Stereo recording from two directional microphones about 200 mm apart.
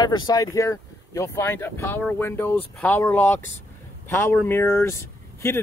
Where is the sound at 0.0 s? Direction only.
20° left (ahead or behind).